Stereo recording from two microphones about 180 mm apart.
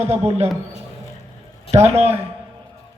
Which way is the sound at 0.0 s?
35° right (ahead or behind).